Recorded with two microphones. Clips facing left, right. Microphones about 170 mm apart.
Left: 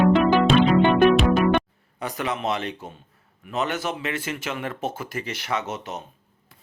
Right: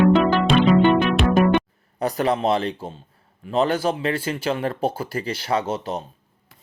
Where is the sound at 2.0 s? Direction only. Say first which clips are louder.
Right 7 dB; 35° right (ahead or behind).